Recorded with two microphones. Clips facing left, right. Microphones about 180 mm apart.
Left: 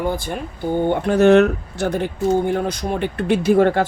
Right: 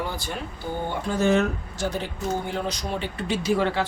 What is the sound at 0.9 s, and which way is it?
Speech, 65° left (ahead or behind).